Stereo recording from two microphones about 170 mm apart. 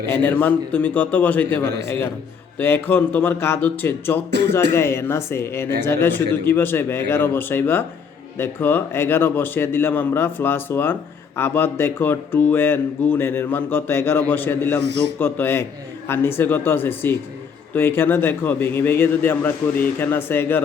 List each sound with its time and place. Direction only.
0.1 s a man's voice: 10° left (ahead or behind)